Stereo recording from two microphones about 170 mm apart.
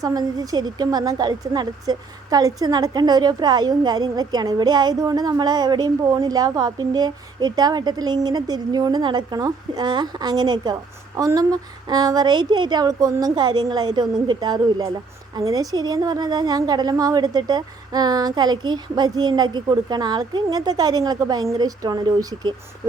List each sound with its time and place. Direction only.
0.0 s a woman's voice: 20° right (ahead or behind)